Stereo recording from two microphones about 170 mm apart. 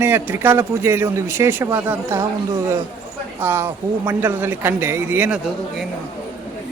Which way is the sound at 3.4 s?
15° right (ahead or behind).